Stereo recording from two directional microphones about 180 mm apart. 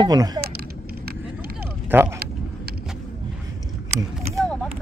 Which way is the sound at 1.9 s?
10° right (ahead or behind).